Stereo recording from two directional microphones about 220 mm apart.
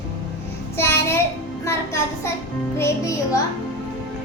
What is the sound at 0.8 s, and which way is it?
Child singing, 10° left (ahead or behind).